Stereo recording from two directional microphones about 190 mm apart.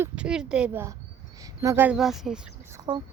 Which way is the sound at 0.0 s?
5° right (ahead or behind).